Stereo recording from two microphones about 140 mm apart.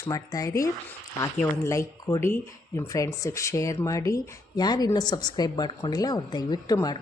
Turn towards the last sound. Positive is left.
turn(degrees=25)  # may be behind; listen again after turning